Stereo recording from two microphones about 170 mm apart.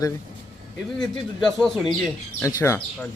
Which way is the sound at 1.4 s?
5° left (ahead or behind).